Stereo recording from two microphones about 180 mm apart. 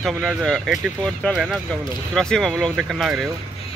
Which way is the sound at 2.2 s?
5° left (ahead or behind).